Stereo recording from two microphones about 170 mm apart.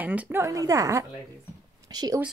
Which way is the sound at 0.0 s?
10° right (ahead or behind).